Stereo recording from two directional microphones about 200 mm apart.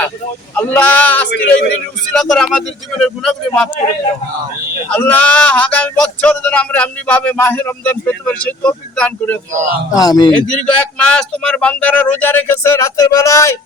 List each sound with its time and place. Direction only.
0.5 s speech: 10° left (ahead or behind)
1.3 s a man's voice: 60° left (ahead or behind)
2.1 s a man's voice: 5° left (ahead or behind)
4.9 s speech: 10° left (ahead or behind)
9.9 s speech: 20° left (ahead or behind)
10.3 s speech: 5° left (ahead or behind)